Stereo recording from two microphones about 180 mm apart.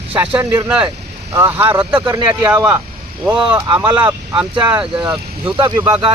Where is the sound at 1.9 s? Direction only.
25° right (ahead or behind).